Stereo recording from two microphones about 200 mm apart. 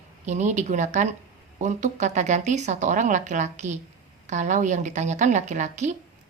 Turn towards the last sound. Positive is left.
turn(degrees=-35)  # may be behind; listen again after turning